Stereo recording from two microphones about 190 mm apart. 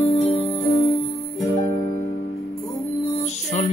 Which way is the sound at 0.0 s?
30° left (ahead or behind).